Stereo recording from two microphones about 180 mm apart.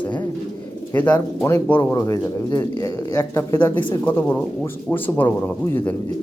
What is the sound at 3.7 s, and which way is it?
Speech, 25° left (ahead or behind).